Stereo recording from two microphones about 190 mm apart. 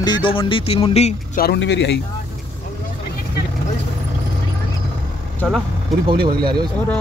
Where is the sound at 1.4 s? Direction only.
60° left (ahead or behind).